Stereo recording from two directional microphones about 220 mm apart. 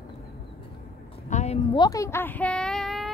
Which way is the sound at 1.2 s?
30° left (ahead or behind).